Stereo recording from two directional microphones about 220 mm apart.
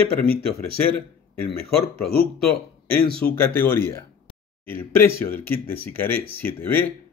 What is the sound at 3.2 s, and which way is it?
A man's voice, 10° left (ahead or behind).